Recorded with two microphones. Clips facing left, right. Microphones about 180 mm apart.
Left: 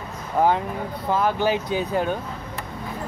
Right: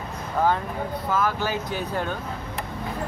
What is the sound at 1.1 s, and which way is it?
Speech, 30° left (ahead or behind).